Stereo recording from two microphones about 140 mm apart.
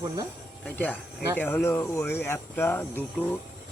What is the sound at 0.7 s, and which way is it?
Speech, 10° left (ahead or behind).